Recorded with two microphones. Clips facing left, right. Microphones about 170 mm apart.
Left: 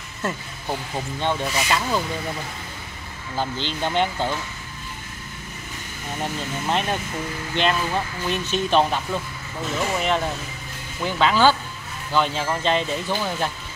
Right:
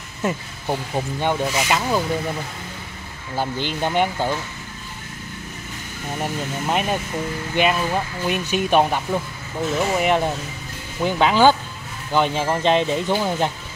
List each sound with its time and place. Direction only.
0.2 s speech: 15° right (ahead or behind)
3.3 s speech: 15° right (ahead or behind)
6.2 s speech: 10° right (ahead or behind)